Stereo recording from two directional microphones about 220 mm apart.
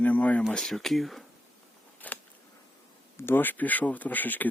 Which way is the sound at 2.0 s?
10° left (ahead or behind).